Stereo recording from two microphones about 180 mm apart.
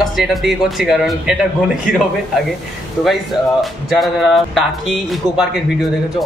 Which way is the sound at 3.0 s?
Centre (ahead or behind).